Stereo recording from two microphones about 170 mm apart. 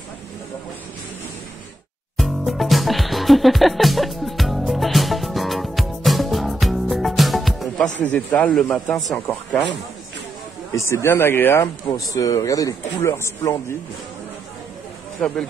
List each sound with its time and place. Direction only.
2.1 s music: centre (ahead or behind)
8.0 s speech: 10° left (ahead or behind)
10.7 s speech: 15° left (ahead or behind)
15.1 s speech: 5° left (ahead or behind)